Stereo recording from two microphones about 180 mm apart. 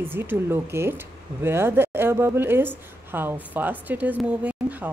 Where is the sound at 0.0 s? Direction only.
10° right (ahead or behind).